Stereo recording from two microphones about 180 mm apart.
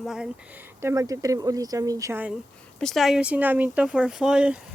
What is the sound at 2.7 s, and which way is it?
Speech, centre (ahead or behind).